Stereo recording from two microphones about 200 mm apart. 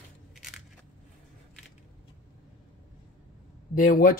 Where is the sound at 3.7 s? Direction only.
45° left (ahead or behind).